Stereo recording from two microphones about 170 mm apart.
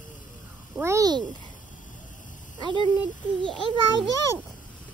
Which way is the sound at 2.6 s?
30° right (ahead or behind).